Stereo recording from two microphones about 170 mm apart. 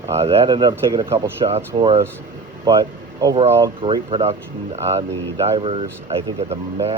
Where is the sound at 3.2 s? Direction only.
20° right (ahead or behind).